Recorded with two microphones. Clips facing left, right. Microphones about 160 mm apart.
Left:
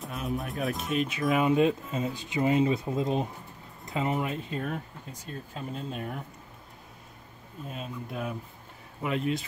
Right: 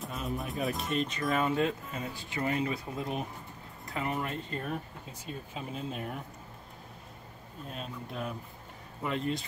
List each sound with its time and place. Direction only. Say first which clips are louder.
0.0 s speech: left 3 dB; centre (ahead or behind)
1.4 s speech: left 8 dB; 15° left (ahead or behind)
4.3 s speech: left 3 dB; 5° left (ahead or behind)
7.6 s speech: left 3 dB; 5° left (ahead or behind)